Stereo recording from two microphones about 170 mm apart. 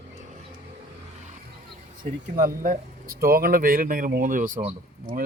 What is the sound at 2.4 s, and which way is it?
Speech, 55° right (ahead or behind).